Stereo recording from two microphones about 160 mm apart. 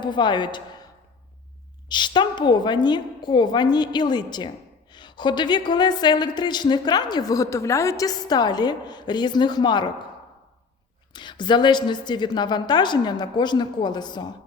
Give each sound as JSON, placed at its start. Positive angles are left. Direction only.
{"t": 0.0, "sound": "a woman's voice", "side_deg": 30}
{"t": 1.9, "sound": "a woman's voice", "side_deg": 30}
{"t": 11.1, "sound": "a woman's voice", "side_deg": 30}